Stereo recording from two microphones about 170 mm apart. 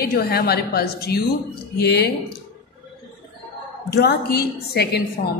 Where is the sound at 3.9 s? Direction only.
70° left (ahead or behind).